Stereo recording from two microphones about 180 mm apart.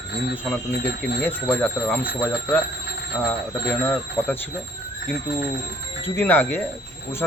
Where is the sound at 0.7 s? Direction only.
65° left (ahead or behind).